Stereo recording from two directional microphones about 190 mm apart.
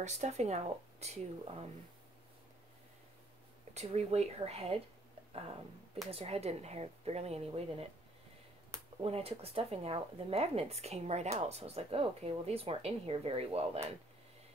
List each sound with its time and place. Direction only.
0.0 s speech: 35° right (ahead or behind)
3.7 s speech: 35° right (ahead or behind)
6.0 s speech: 30° right (ahead or behind)
9.0 s speech: 30° right (ahead or behind)